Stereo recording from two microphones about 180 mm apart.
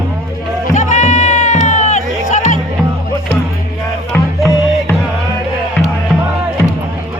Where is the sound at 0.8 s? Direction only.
40° left (ahead or behind).